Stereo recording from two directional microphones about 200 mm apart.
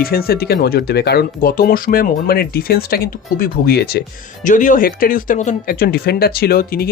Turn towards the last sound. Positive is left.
turn(degrees=50)  # may be behind; listen again after turning